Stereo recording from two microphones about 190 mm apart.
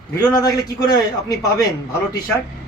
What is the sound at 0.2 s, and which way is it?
Speech, 20° left (ahead or behind).